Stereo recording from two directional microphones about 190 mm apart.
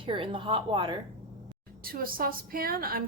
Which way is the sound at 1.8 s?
50° right (ahead or behind).